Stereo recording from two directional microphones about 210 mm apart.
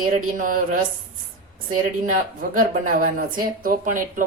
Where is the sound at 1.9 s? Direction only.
35° right (ahead or behind).